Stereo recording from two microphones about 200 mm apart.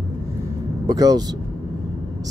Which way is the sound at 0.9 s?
20° right (ahead or behind).